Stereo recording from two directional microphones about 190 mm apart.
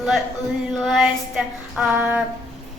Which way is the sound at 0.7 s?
Centre (ahead or behind).